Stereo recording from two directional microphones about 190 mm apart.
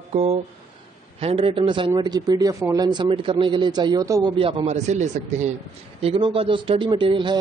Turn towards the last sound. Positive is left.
turn(degrees=-25)  # may be behind; listen again after turning